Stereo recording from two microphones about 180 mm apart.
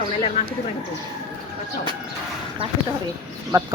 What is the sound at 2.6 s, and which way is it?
Speech, 30° right (ahead or behind).